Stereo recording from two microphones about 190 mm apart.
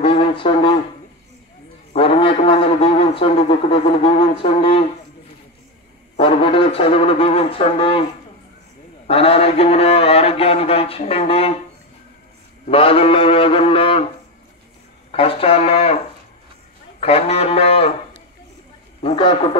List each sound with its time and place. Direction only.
0.0 s a sound: 25° left (ahead or behind)
2.0 s a man's voice: 30° left (ahead or behind)
6.1 s a man's voice: 25° left (ahead or behind)
9.0 s a man's voice: 30° left (ahead or behind)
12.6 s a man's voice: 30° left (ahead or behind)
15.0 s a man's voice: 30° left (ahead or behind)
17.0 s a man's voice: 30° left (ahead or behind)
19.0 s a man's voice: 25° left (ahead or behind)